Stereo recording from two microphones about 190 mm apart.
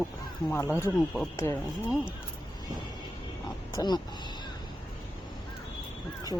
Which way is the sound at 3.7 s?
20° left (ahead or behind).